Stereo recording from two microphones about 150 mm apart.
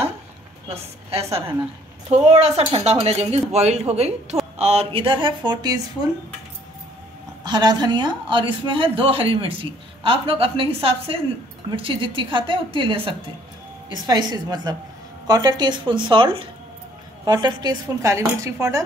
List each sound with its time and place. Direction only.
0.7 s a woman's voice: 40° right (ahead or behind); by 6.0 s 25° right (ahead or behind)
7.4 s a woman's voice: 30° right (ahead or behind)
14.0 s dishes: 25° right (ahead or behind)
15.2 s a woman's voice: 25° right (ahead or behind)
17.2 s dishes: 25° right (ahead or behind)